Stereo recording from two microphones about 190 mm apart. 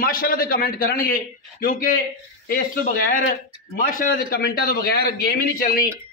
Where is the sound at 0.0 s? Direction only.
50° left (ahead or behind).